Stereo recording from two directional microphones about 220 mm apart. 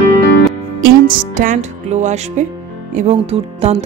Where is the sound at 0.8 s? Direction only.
40° right (ahead or behind).